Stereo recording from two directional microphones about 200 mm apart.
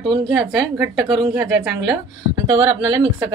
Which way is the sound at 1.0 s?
25° right (ahead or behind).